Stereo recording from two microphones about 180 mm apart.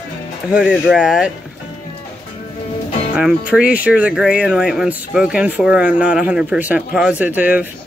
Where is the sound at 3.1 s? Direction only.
5° right (ahead or behind).